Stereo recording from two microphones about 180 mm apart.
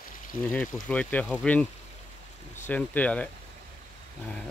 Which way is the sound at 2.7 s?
10° left (ahead or behind).